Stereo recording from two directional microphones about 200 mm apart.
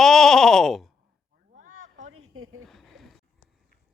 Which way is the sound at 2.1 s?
90° right.